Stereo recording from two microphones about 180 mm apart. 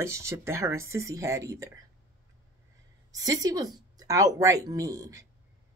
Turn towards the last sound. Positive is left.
turn(degrees=-20)  # may be behind; listen again after turning